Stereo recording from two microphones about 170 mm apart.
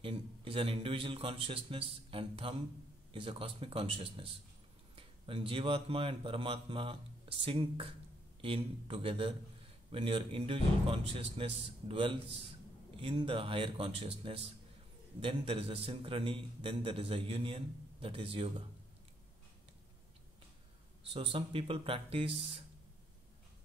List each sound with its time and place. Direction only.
0.0 s a man's voice: 30° right (ahead or behind)
21.1 s a man's voice: 35° right (ahead or behind)